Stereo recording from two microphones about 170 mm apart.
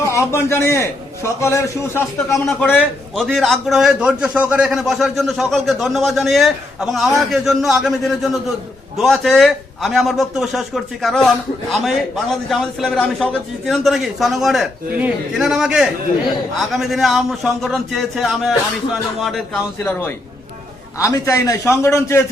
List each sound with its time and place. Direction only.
0.0 s a man's voice: 15° left (ahead or behind); by 19.6 s centre (ahead or behind)
19.8 s a man's voice: 10° left (ahead or behind)